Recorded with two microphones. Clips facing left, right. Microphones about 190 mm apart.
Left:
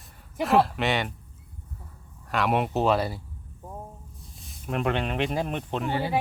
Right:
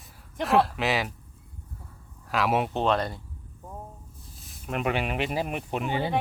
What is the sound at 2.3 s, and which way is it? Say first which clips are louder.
Speech: even; centre (ahead or behind).